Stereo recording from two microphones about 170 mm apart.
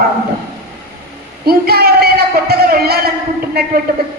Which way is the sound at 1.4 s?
65° right (ahead or behind).